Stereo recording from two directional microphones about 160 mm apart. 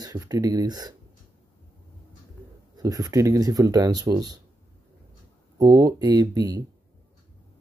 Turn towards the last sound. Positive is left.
turn(degrees=-20)  # may be behind; listen again after turning